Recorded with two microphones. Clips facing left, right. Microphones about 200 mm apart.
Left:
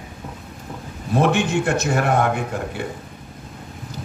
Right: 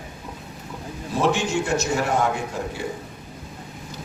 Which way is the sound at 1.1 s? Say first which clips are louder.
Left 3 dB; 60° left (ahead or behind).